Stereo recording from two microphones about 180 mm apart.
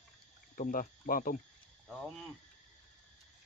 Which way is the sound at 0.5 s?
45° left (ahead or behind).